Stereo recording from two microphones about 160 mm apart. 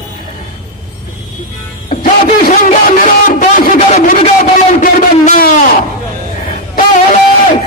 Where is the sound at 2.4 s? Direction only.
55° left (ahead or behind).